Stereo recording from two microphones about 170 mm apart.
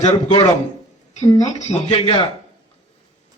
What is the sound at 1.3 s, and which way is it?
Speech, 20° left (ahead or behind).